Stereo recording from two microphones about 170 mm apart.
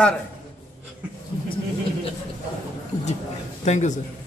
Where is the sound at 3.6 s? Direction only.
45° left (ahead or behind).